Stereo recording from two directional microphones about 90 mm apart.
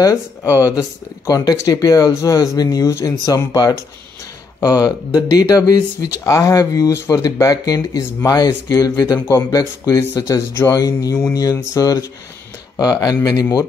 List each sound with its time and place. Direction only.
0.4 s speech: 35° left (ahead or behind)
1.2 s speech: 45° left (ahead or behind)
3.3 s speech: 45° left (ahead or behind)